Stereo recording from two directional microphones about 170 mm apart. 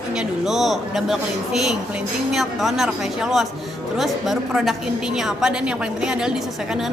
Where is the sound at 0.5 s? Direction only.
Centre (ahead or behind).